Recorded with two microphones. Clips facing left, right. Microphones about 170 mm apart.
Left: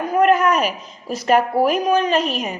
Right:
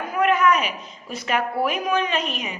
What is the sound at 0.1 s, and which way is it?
A woman's voice, 40° left (ahead or behind).